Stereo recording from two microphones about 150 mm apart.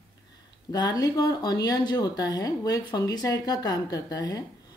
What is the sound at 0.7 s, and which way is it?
A woman's voice, 25° left (ahead or behind).